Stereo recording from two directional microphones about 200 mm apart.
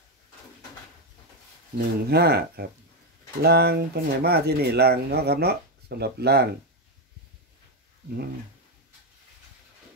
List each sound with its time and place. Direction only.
1.8 s speech: 55° right (ahead or behind)